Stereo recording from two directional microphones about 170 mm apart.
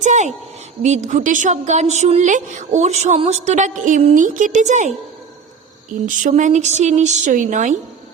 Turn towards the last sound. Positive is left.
turn(degrees=-45)  # may be behind; listen again after turning